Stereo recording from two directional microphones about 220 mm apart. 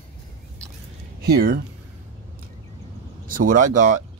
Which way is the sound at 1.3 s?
45° right (ahead or behind).